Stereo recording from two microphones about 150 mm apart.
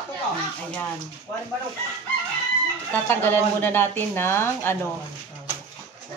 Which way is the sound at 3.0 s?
15° left (ahead or behind).